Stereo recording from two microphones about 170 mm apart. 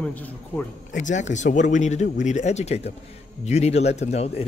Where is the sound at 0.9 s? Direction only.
45° left (ahead or behind).